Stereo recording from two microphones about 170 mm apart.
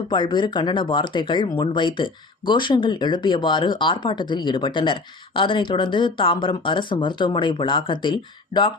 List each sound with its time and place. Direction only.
0.1 s speech: 25° left (ahead or behind)